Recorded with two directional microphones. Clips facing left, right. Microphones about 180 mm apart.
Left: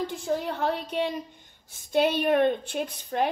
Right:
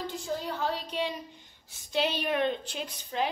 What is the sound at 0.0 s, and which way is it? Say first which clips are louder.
A woman's voice: left 6 dB; 60° left (ahead or behind).